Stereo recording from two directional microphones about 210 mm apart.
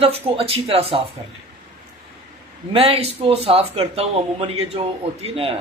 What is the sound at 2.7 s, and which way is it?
A man's voice, 30° right (ahead or behind).